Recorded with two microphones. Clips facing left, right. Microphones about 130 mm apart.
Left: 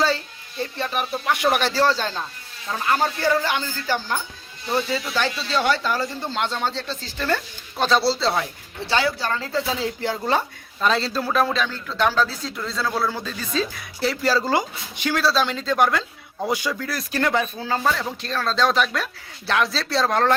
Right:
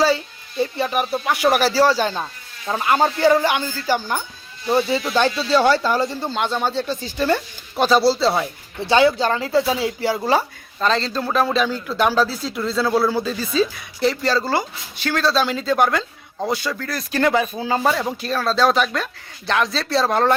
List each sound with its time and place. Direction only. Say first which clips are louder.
0.6 s speech: right 5 dB; 10° right (ahead or behind)
4.7 s speech: right 5 dB; 20° right (ahead or behind)
6.3 s speech: right 3 dB; 5° right (ahead or behind)
8.8 s speech: right 7 dB; 20° right (ahead or behind)
10.8 s speech: right 1 dB; 5° left (ahead or behind)
16.5 s speech: right 1 dB; 10° left (ahead or behind); by 20.3 s 5° right (ahead or behind)